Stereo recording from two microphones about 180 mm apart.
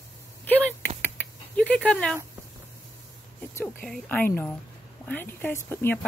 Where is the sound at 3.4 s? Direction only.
10° left (ahead or behind).